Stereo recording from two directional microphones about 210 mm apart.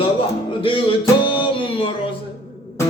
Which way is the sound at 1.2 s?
20° left (ahead or behind).